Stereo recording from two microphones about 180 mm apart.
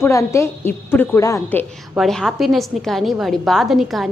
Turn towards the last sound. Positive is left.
turn(degrees=0)  # may be behind; listen again after turning